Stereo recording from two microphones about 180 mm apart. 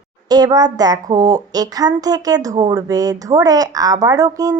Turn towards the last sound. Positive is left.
turn(degrees=-20)  # may be behind; listen again after turning